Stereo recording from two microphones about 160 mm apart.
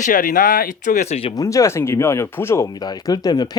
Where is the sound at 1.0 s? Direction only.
40° left (ahead or behind).